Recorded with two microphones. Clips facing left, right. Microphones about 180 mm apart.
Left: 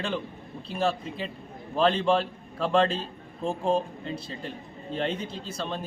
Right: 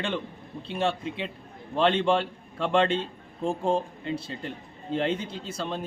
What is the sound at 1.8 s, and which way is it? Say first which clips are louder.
Speech: even; centre (ahead or behind).